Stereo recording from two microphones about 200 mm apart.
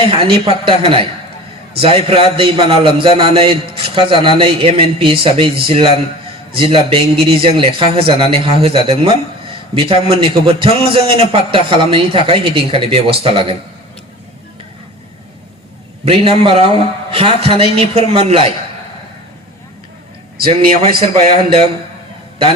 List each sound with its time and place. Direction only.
0.1 s a man's voice: 25° right (ahead or behind)
16.0 s a man's voice: 30° right (ahead or behind)
20.4 s a man's voice: 25° right (ahead or behind)